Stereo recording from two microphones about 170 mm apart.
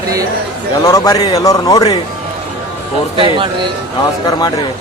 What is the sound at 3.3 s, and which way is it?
Speech, 30° right (ahead or behind).